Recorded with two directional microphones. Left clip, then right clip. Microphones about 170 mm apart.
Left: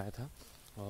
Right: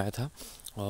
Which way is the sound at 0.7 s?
50° right (ahead or behind).